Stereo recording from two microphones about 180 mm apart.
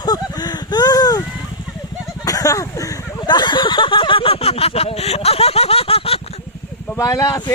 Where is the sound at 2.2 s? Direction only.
20° left (ahead or behind).